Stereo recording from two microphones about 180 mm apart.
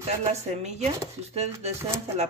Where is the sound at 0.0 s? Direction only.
35° right (ahead or behind).